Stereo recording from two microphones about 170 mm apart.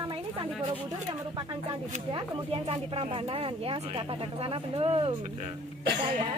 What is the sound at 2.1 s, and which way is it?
Speech, 35° right (ahead or behind).